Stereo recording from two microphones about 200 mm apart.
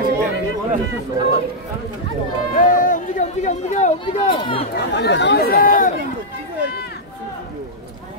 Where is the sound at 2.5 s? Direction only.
40° left (ahead or behind).